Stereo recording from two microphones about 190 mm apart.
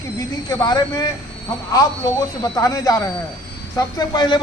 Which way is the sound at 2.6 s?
20° left (ahead or behind).